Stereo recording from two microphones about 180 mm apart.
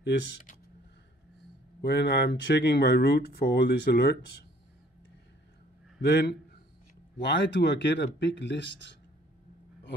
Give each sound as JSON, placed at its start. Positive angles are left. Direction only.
{"t": 0.0, "sound": "speech", "side_deg": 75}
{"t": 1.8, "sound": "speech", "side_deg": 70}
{"t": 5.9, "sound": "a man's voice", "side_deg": 70}